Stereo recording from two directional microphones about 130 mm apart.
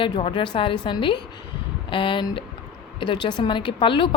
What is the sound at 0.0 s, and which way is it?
A woman's voice, 40° left (ahead or behind).